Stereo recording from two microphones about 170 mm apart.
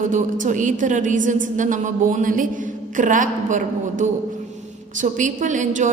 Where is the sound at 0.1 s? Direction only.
50° right (ahead or behind).